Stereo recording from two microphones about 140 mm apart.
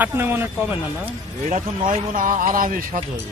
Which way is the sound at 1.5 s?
70° right (ahead or behind).